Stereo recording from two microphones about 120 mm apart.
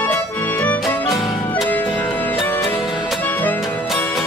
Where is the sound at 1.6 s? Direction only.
15° left (ahead or behind).